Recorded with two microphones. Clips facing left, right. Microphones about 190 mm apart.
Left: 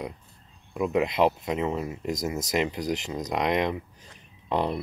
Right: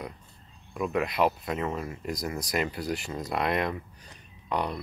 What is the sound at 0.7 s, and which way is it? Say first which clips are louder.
Speech: left 3 dB; 20° left (ahead or behind).